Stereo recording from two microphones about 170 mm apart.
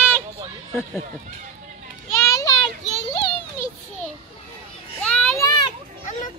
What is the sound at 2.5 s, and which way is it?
Children playing, 30° left (ahead or behind).